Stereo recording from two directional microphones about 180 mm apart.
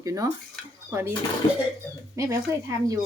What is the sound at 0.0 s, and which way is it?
Speech, 15° right (ahead or behind).